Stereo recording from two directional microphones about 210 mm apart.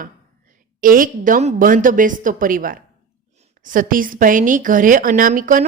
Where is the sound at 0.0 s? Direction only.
40° right (ahead or behind).